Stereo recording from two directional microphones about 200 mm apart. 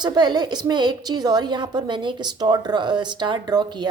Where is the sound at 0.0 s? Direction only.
20° right (ahead or behind).